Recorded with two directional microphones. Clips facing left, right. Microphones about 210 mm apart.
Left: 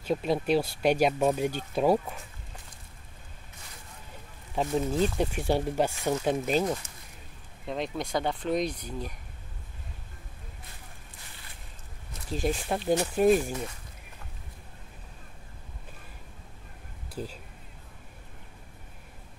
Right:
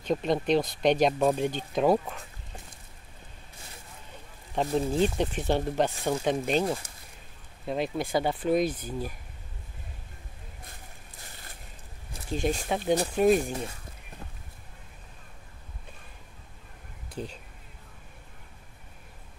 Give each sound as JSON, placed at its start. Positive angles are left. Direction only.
{"t": 0.0, "sound": "speech", "side_deg": 5}
{"t": 4.6, "sound": "speech", "side_deg": 5}
{"t": 4.9, "sound": "speech", "side_deg": -25}
{"t": 5.2, "sound": "speech", "side_deg": 10}
{"t": 7.6, "sound": "speech", "side_deg": -5}
{"t": 12.3, "sound": "speech", "side_deg": 0}
{"t": 13.4, "sound": "speech", "side_deg": -35}
{"t": 17.1, "sound": "speech", "side_deg": 5}